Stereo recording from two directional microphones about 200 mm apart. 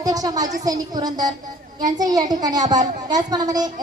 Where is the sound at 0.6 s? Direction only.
20° right (ahead or behind).